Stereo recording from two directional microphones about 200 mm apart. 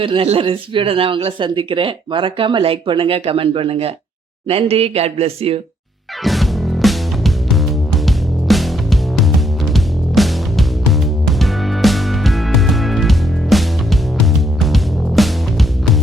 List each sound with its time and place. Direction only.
0.0 s speech: 25° right (ahead or behind)
6.2 s music: centre (ahead or behind)